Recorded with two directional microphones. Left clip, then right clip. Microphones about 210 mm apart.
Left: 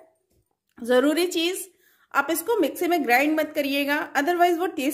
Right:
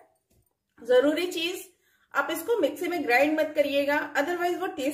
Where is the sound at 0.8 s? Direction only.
50° left (ahead or behind).